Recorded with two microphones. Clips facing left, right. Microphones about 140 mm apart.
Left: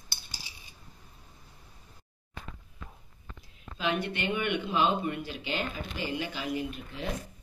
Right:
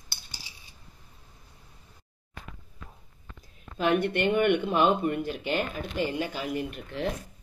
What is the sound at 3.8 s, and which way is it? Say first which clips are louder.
Speech: right 6 dB; 55° right (ahead or behind).